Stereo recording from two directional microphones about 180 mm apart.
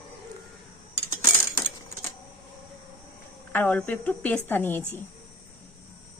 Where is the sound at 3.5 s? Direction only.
10° left (ahead or behind).